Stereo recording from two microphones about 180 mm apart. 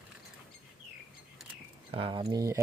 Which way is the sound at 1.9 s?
25° right (ahead or behind).